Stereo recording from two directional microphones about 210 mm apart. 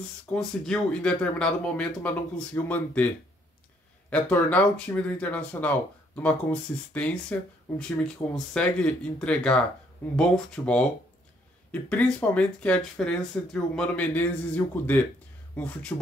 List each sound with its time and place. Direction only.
0.3 s speech: 5° left (ahead or behind)
4.1 s speech: 5° left (ahead or behind)
8.5 s speech: 5° left (ahead or behind)